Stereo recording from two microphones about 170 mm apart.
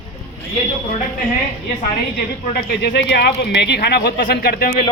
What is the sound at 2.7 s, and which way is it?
Speech, 75° left (ahead or behind).